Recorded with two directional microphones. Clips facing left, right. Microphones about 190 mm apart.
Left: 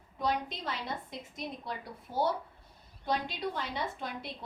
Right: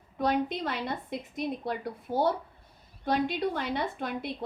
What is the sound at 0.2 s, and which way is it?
Speech, 55° right (ahead or behind).